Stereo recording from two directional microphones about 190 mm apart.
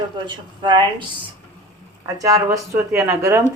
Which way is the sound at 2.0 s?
20° right (ahead or behind).